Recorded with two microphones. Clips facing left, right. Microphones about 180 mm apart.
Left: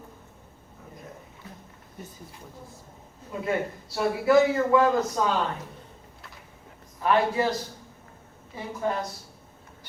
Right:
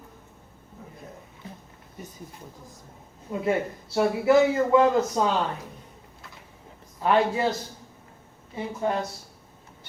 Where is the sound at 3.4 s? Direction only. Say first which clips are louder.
Right 2 dB; 25° right (ahead or behind).